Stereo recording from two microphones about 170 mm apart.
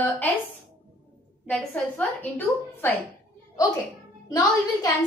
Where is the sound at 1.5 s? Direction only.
5° left (ahead or behind).